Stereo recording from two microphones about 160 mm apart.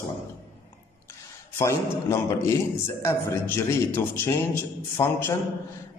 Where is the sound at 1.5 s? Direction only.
20° left (ahead or behind).